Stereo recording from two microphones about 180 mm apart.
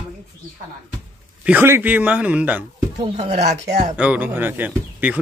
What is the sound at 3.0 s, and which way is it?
Speech, 35° right (ahead or behind).